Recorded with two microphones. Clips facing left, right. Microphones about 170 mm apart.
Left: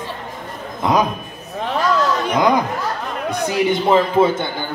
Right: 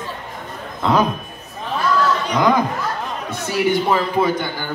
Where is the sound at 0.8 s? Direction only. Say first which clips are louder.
Even; 15° left (ahead or behind).